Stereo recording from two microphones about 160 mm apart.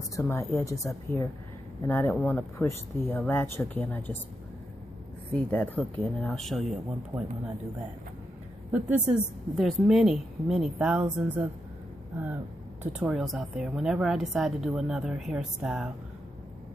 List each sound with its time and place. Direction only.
0.1 s a woman's voice: 15° left (ahead or behind)
5.3 s a woman's voice: 10° left (ahead or behind)
7.1 s a woman's voice: 10° right (ahead or behind)
8.7 s a woman's voice: 10° right (ahead or behind)
13.0 s a woman's voice: 5° right (ahead or behind)